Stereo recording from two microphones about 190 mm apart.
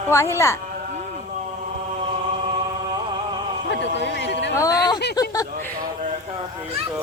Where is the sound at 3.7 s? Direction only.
65° left (ahead or behind).